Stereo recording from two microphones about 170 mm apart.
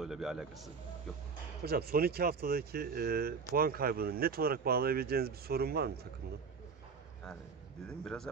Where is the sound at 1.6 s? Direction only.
65° right (ahead or behind).